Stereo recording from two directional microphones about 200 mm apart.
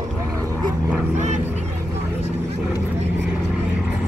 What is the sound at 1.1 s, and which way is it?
Vehicle, 35° right (ahead or behind).